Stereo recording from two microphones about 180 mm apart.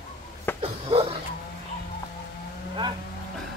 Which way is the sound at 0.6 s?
30° right (ahead or behind).